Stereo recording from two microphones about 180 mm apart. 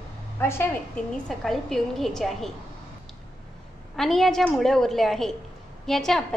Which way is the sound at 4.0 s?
Centre (ahead or behind).